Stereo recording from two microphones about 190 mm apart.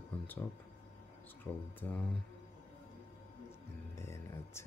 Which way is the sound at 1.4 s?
10° left (ahead or behind).